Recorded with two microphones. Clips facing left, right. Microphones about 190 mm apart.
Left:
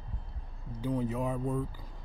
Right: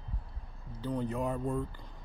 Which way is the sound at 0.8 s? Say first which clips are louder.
Left 2 dB; 5° left (ahead or behind).